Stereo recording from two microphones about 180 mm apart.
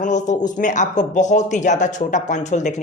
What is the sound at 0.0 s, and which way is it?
Speech, 45° left (ahead or behind).